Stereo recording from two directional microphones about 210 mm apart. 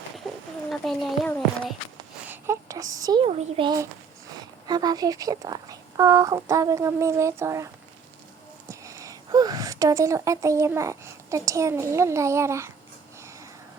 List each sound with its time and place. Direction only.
0.7 s speech: centre (ahead or behind)
2.2 s a child's voice: 10° right (ahead or behind)